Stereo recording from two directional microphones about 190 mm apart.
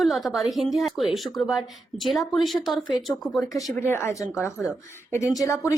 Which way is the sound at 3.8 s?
15° left (ahead or behind).